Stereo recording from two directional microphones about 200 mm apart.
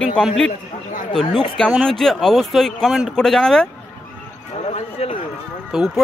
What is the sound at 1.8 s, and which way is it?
A man's voice, centre (ahead or behind).